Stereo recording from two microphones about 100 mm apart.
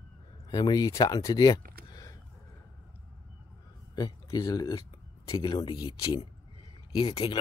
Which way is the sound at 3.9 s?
45° left (ahead or behind).